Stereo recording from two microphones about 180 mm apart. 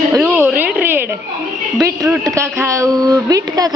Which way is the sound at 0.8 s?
10° right (ahead or behind).